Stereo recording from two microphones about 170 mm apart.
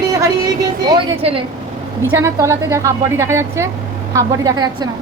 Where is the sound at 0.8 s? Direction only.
35° right (ahead or behind).